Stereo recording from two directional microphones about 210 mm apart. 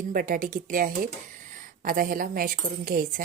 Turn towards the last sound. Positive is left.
turn(degrees=-45)  # may be behind; listen again after turning